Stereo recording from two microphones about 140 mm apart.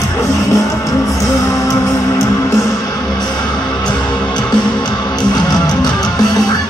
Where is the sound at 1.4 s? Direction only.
25° left (ahead or behind).